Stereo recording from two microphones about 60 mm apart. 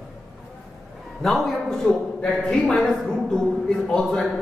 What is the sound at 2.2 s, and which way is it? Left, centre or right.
A man's voice, centre.